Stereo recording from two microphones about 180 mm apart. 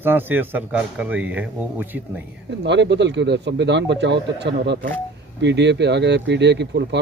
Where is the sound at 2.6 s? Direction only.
75° right (ahead or behind).